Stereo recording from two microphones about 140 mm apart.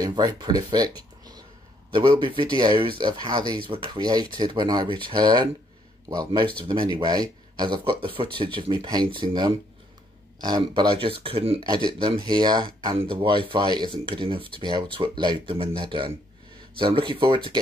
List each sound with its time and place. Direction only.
0.0 s speech: 30° right (ahead or behind)